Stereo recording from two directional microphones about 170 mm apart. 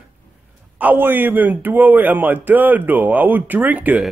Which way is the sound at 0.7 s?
10° right (ahead or behind).